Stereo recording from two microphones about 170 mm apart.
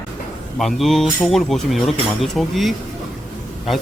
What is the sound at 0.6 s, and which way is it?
Speech, centre (ahead or behind).